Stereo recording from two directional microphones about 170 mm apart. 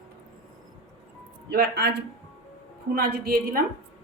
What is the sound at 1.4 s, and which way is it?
A woman's voice, 70° right (ahead or behind).